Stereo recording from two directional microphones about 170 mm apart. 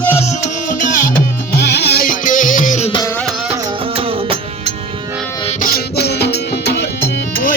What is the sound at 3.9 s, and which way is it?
Music, 35° right (ahead or behind).